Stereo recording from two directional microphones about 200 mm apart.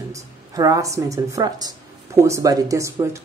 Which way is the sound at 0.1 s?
15° right (ahead or behind).